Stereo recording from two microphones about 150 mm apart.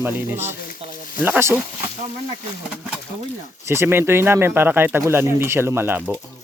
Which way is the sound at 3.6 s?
15° right (ahead or behind).